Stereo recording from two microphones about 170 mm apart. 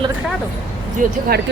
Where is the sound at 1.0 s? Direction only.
50° right (ahead or behind).